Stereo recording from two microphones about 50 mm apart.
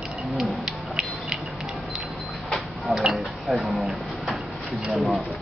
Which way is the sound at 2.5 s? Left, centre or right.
Centre.